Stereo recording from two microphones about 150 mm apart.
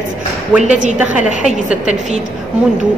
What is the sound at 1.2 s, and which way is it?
Speech, 55° left (ahead or behind).